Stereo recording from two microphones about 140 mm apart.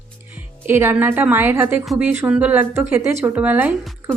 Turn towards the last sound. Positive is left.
turn(degrees=-15)  # may be behind; listen again after turning